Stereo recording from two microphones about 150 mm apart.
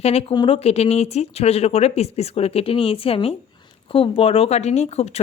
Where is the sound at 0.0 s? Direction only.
40° left (ahead or behind).